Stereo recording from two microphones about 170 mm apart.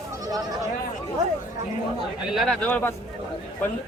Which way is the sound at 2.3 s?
Centre (ahead or behind).